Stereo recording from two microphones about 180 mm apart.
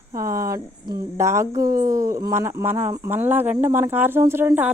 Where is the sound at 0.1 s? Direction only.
15° right (ahead or behind).